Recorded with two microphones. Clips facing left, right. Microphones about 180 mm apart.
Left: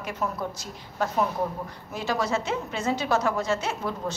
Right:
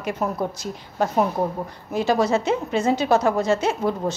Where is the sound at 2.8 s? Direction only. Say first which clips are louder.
Right 5 dB; 20° right (ahead or behind).